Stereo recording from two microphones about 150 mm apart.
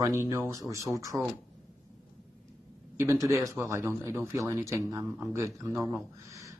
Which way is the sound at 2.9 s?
15° right (ahead or behind).